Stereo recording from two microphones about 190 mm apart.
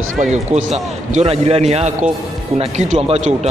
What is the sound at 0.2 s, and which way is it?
Speech, 40° right (ahead or behind).